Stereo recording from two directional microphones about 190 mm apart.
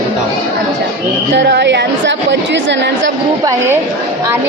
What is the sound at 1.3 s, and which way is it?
A woman's voice, 65° right (ahead or behind).